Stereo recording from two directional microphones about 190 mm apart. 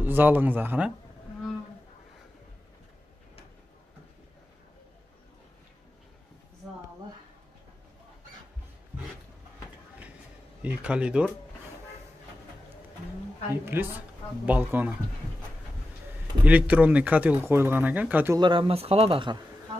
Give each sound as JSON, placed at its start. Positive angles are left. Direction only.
{"t": 0.0, "sound": "speech", "side_deg": -10}
{"t": 10.6, "sound": "speech", "side_deg": -5}
{"t": 13.5, "sound": "speech", "side_deg": -10}
{"t": 16.4, "sound": "speech", "side_deg": -5}
{"t": 18.4, "sound": "speech", "side_deg": -25}